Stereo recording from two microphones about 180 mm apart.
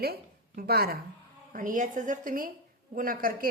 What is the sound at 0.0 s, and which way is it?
A woman's voice, 60° right (ahead or behind).